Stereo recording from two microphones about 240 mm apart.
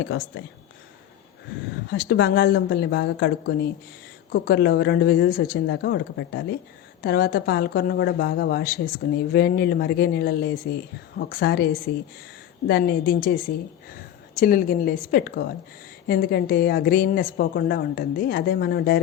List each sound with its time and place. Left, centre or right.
1.9 s a woman's voice: left